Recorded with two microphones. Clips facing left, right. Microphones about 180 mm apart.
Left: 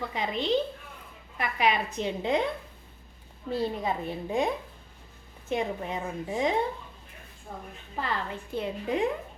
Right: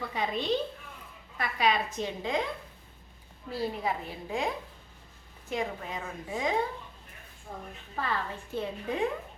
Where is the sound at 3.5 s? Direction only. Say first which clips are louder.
Left 3 dB; 25° left (ahead or behind).